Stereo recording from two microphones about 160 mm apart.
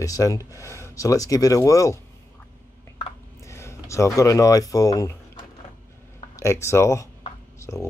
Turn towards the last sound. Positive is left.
turn(degrees=20)  # may be behind; listen again after turning